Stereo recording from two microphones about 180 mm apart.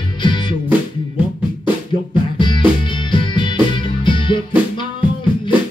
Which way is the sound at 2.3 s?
25° left (ahead or behind).